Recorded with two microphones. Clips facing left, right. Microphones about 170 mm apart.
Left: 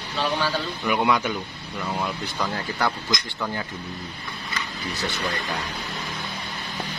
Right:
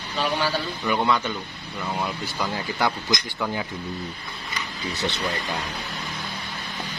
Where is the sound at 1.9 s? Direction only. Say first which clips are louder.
Even; 5° right (ahead or behind).